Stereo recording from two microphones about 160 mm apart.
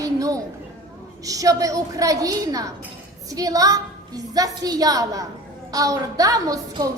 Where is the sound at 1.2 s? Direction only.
20° right (ahead or behind).